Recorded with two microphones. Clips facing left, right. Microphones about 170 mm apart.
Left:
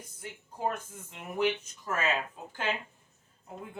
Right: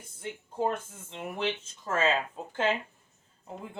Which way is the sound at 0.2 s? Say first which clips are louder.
Right 4 dB; 25° right (ahead or behind).